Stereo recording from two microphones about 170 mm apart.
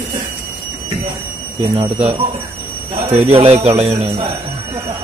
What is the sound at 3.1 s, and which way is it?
Speech, 35° right (ahead or behind).